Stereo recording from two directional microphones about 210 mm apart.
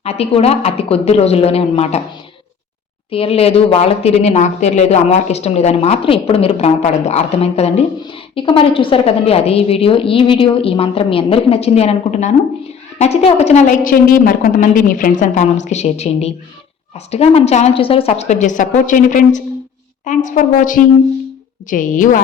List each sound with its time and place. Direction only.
0.0 s speech: 30° left (ahead or behind)
3.1 s a woman's voice: 25° left (ahead or behind)